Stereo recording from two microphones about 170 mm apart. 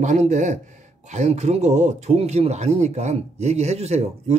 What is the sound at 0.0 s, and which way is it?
A man's voice, 45° right (ahead or behind).